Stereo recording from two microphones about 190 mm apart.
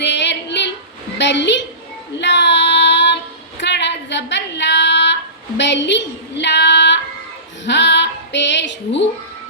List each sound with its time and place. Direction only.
0.0 s female singing: 65° left (ahead or behind)
1.2 s a child's voice: 65° left (ahead or behind)
2.1 s child singing: 65° left (ahead or behind)
3.6 s a sound: 65° left (ahead or behind)
5.5 s child singing: 65° left (ahead or behind)
7.6 s female singing: 65° left (ahead or behind)